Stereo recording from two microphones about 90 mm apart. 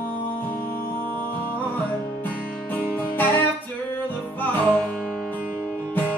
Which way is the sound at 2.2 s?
20° left (ahead or behind).